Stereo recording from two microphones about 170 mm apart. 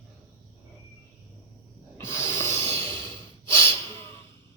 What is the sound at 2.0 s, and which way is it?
Snort, 15° left (ahead or behind).